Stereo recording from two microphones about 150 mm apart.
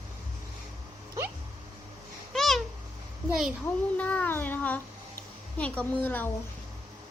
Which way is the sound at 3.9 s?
10° left (ahead or behind).